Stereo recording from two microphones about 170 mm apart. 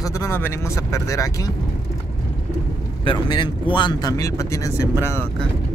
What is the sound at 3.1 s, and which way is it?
Speech, 25° left (ahead or behind).